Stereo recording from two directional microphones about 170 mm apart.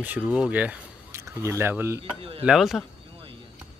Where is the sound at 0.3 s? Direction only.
10° right (ahead or behind).